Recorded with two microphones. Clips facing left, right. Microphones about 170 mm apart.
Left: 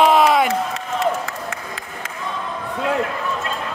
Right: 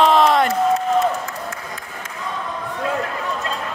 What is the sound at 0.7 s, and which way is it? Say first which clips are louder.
Crowd: right 4 dB; 75° left (ahead or behind).